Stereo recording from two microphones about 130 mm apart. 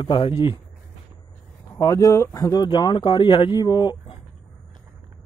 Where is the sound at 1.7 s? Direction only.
25° left (ahead or behind).